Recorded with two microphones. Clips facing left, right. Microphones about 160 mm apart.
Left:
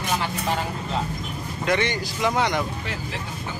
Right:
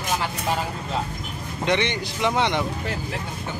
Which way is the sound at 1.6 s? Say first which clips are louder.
Even; 20° right (ahead or behind).